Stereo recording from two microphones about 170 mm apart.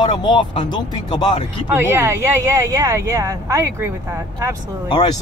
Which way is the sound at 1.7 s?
15° right (ahead or behind).